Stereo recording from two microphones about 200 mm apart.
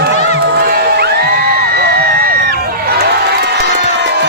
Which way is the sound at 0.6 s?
50° right (ahead or behind).